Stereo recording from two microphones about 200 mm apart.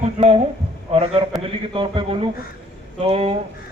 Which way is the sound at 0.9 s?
30° right (ahead or behind).